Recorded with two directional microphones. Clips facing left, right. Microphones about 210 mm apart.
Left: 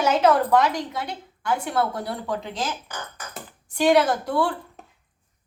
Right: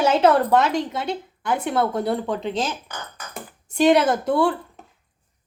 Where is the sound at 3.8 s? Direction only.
20° right (ahead or behind).